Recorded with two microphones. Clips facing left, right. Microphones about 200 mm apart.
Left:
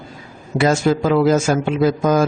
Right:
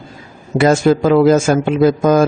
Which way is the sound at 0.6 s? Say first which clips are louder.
Right 4 dB; 50° right (ahead or behind).